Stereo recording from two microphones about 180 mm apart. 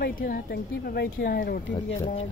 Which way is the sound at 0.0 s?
55° left (ahead or behind).